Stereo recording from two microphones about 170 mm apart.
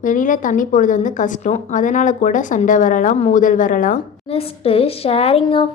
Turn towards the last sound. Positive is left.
turn(degrees=35)  # may be behind; listen again after turning